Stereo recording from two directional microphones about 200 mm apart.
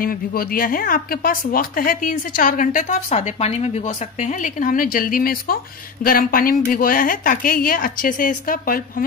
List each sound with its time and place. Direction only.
0.0 s speech: 45° left (ahead or behind)